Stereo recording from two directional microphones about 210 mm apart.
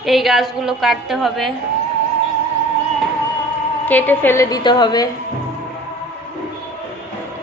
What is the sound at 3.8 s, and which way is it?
A woman's voice, 10° left (ahead or behind).